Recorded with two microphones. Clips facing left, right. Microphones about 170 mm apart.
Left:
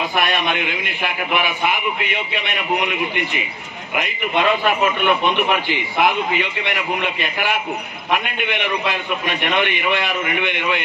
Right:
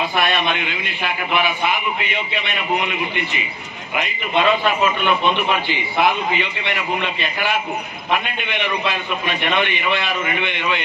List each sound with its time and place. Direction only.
0.2 s a man's voice: 55° left (ahead or behind)
8.1 s a man's voice: 60° left (ahead or behind)